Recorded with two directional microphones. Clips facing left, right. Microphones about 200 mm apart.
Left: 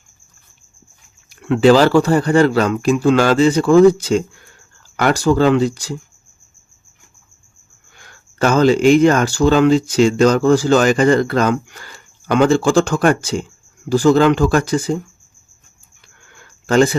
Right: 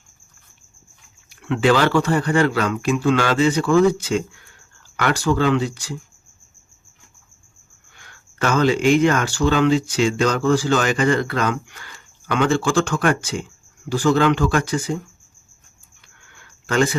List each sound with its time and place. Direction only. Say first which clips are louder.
1.3 s speech: left 6 dB; 40° left (ahead or behind)
8.4 s speech: left 5 dB; 40° left (ahead or behind)
16.6 s speech: left 6 dB; 35° left (ahead or behind)